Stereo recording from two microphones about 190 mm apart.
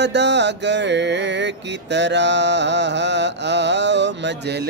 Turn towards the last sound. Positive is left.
turn(degrees=-65)  # may be behind; listen again after turning